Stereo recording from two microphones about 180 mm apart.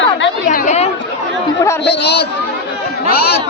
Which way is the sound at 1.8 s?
65° left (ahead or behind).